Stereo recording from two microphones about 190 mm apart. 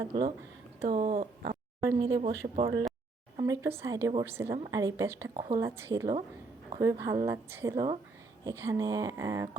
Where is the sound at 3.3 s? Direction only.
15° right (ahead or behind).